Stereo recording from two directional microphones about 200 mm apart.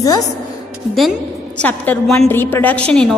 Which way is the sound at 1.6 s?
5° left (ahead or behind).